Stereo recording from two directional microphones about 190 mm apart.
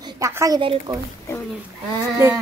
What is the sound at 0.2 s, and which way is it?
Speech, 15° right (ahead or behind).